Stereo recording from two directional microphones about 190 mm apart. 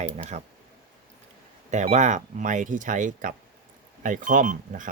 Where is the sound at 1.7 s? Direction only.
40° right (ahead or behind).